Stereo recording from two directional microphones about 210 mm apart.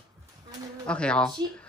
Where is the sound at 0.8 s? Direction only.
5° left (ahead or behind).